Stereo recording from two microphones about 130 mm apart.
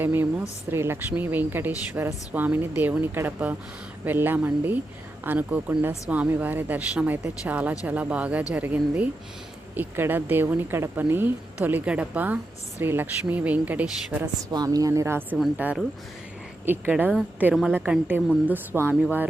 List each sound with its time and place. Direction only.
0.0 s speech: 15° right (ahead or behind)
14.5 s speech: 30° right (ahead or behind)
15.4 s speech: 5° right (ahead or behind)